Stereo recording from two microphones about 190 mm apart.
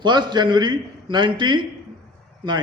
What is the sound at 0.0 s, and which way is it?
A man's voice, 25° right (ahead or behind).